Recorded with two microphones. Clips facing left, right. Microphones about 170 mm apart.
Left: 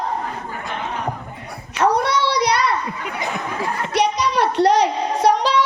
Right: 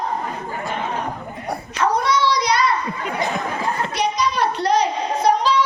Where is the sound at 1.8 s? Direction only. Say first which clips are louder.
Left 1 dB; 65° left (ahead or behind).